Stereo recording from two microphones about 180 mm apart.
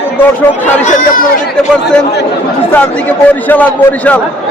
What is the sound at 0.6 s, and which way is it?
Speech, 40° left (ahead or behind).